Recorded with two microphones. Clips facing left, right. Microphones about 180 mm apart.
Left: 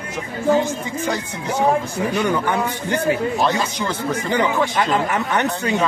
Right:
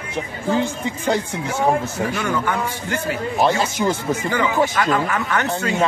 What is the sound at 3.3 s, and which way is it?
Speech, 15° right (ahead or behind).